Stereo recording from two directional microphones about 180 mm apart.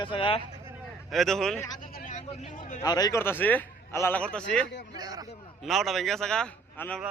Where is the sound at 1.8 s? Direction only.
45° left (ahead or behind).